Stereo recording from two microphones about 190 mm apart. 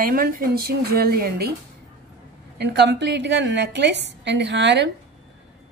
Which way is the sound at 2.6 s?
65° right (ahead or behind).